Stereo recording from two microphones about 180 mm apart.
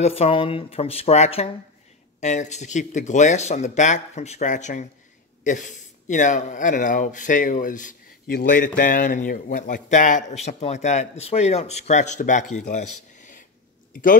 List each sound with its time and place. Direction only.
0.0 s a man's voice: 35° left (ahead or behind)